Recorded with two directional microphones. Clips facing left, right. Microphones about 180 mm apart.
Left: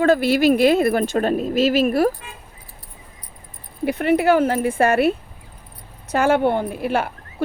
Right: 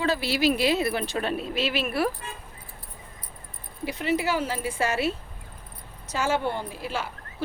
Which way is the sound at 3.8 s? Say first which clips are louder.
Left 9 dB; 55° left (ahead or behind).